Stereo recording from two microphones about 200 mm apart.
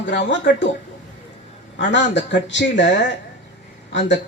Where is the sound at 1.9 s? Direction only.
60° left (ahead or behind).